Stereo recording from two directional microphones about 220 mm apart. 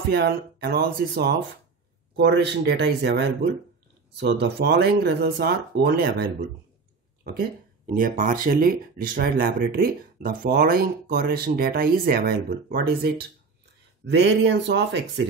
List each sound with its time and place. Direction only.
0.1 s speech: 45° right (ahead or behind)
7.2 s speech: 40° right (ahead or behind)